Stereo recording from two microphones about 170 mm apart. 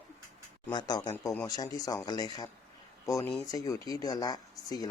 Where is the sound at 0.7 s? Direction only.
25° left (ahead or behind).